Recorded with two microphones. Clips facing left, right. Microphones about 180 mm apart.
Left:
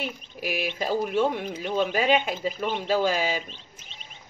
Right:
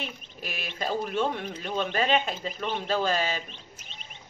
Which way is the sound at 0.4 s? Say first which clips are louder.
Left 6 dB; 10° left (ahead or behind).